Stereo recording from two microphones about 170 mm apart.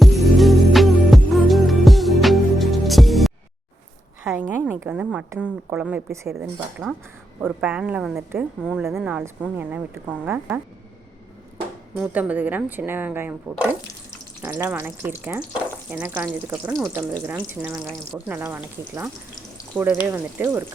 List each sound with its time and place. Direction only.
0.0 s music: centre (ahead or behind)
4.2 s a woman's voice: 10° right (ahead or behind)
11.9 s a woman's voice: 10° right (ahead or behind)